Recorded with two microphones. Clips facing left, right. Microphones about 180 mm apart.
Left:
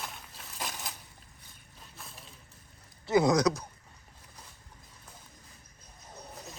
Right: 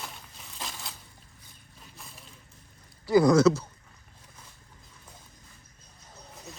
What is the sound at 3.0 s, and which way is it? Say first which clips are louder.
Speech: right 5 dB; 20° left (ahead or behind).